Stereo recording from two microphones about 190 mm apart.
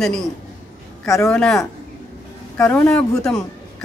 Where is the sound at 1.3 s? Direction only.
5° left (ahead or behind).